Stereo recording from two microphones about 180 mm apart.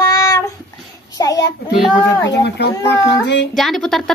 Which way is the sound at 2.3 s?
70° left (ahead or behind).